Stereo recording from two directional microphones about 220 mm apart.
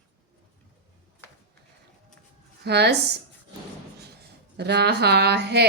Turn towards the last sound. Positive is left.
turn(degrees=-50)  # may be behind; listen again after turning